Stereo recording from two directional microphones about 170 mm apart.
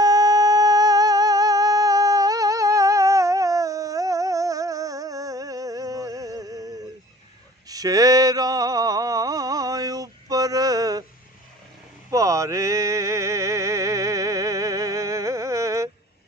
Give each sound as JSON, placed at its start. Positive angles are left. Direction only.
{"t": 0.0, "sound": "humming", "side_deg": -20}
{"t": 7.6, "sound": "a sound", "side_deg": -20}
{"t": 12.1, "sound": "music", "side_deg": -20}